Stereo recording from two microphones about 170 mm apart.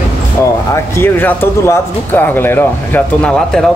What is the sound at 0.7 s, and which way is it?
Speech, 15° left (ahead or behind).